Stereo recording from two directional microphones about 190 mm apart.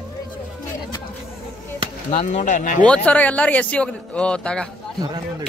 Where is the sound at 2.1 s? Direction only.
40° left (ahead or behind).